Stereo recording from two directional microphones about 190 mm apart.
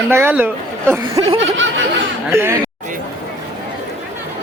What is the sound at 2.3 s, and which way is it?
Speech, 15° right (ahead or behind).